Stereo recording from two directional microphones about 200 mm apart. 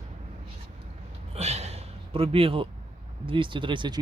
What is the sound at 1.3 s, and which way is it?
Gasp, 35° right (ahead or behind).